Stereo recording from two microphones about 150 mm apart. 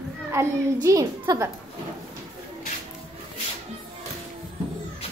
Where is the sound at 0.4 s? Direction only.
20° right (ahead or behind).